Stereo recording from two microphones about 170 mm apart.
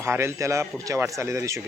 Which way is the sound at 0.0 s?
15° right (ahead or behind).